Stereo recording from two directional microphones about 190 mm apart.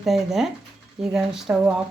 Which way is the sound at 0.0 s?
Centre (ahead or behind).